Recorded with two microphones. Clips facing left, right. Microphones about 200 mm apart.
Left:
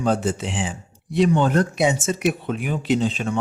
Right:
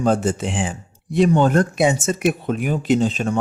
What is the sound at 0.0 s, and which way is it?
Speech, 45° right (ahead or behind).